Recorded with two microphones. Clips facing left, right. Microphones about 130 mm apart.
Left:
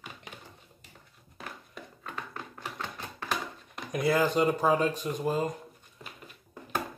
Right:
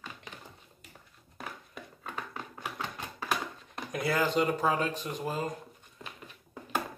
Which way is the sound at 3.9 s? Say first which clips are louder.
Left 3 dB; 15° left (ahead or behind).